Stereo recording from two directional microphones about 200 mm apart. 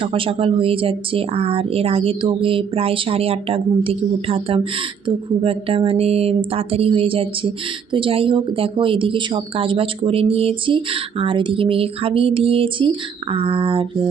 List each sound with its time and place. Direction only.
0.0 s speech: 25° right (ahead or behind)